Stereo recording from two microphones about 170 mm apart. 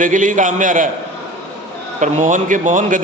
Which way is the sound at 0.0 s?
50° right (ahead or behind).